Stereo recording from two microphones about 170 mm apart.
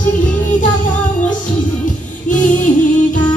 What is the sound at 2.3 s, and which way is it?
Music, 50° left (ahead or behind).